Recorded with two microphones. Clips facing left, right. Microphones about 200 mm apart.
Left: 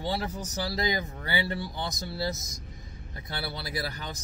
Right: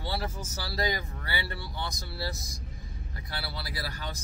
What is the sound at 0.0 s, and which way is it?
Speech, 15° left (ahead or behind).